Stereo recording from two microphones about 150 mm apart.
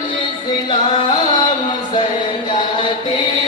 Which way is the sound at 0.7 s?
30° left (ahead or behind).